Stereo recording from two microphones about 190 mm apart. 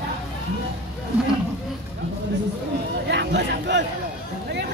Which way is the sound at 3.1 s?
65° right (ahead or behind).